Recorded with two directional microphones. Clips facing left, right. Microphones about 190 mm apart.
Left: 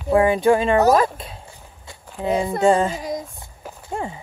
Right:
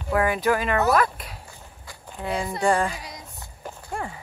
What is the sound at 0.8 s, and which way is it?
Speech, 40° left (ahead or behind).